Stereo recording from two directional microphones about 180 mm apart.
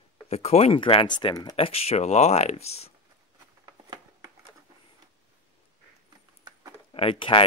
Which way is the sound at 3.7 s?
20° right (ahead or behind).